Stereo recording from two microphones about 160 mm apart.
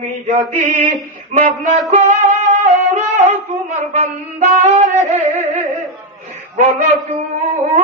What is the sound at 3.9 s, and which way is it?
Music, 45° right (ahead or behind).